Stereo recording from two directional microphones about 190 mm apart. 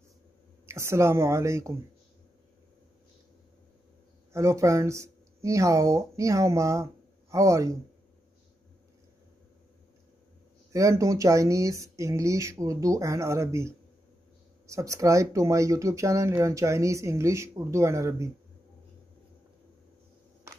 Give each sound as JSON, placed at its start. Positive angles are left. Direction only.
{"t": 0.7, "sound": "speech", "side_deg": -15}
{"t": 4.3, "sound": "speech", "side_deg": -15}
{"t": 10.7, "sound": "speech", "side_deg": -15}